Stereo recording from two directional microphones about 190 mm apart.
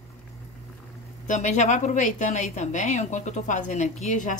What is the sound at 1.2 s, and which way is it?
A woman's voice, 40° left (ahead or behind).